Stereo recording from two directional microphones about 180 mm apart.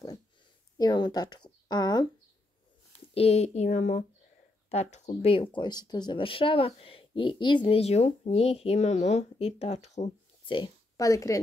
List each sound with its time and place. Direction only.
0.7 s speech: 25° left (ahead or behind)
3.2 s speech: 35° left (ahead or behind)
10.6 s speech: 20° left (ahead or behind)